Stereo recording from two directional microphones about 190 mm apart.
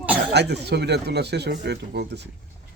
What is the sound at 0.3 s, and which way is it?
Speech, 60° right (ahead or behind).